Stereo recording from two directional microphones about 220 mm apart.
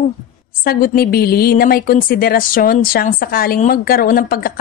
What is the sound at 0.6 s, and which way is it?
A woman's voice, 40° left (ahead or behind).